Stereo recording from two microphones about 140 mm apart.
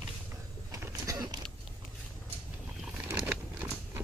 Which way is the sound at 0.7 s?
25° right (ahead or behind).